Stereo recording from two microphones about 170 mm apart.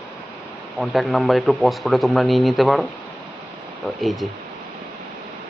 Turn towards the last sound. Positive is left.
turn(degrees=0)  # may be behind; listen again after turning